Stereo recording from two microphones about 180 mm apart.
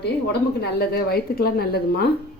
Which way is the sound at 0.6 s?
60° left (ahead or behind).